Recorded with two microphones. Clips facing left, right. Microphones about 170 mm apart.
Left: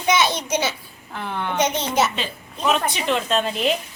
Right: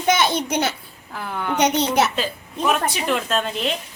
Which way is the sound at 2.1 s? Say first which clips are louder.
Right 4 dB; 5° right (ahead or behind).